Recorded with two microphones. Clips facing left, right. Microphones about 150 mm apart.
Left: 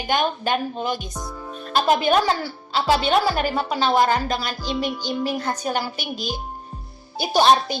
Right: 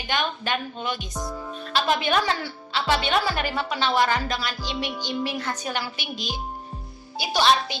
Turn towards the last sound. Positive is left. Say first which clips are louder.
# left 4 dB
turn(degrees=45)  # may be behind; listen again after turning